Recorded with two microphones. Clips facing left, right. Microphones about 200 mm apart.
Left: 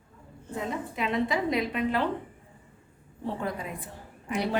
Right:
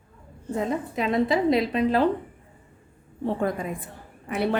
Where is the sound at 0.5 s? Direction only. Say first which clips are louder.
Right 6 dB; 40° right (ahead or behind).